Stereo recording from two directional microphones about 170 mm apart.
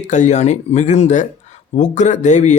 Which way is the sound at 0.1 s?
45° left (ahead or behind).